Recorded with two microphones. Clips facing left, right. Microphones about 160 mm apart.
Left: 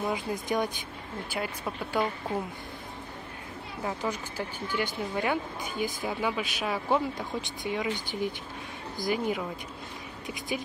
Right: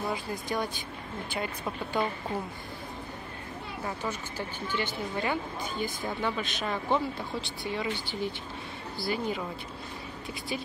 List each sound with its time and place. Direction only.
0.1 s speech: 20° left (ahead or behind)
1.3 s speech: 10° left (ahead or behind)
3.8 s speech: 10° left (ahead or behind)
10.5 s speech: 15° left (ahead or behind)